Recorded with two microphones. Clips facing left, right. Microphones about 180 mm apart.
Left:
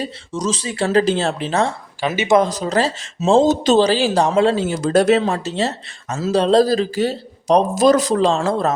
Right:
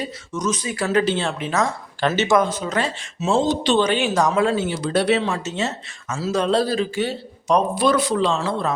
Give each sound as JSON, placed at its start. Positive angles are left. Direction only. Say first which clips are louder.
{"t": 0.0, "sound": "speech", "louder": "left 2 dB", "side_deg": 30}
{"t": 2.0, "sound": "speech", "louder": "right 1 dB", "side_deg": 10}
{"t": 2.4, "sound": "speech", "louder": "left 4 dB", "side_deg": 35}
{"t": 3.4, "sound": "speech", "louder": "left 5 dB", "side_deg": 45}
{"t": 4.7, "sound": "speech", "louder": "left 5 dB", "side_deg": 45}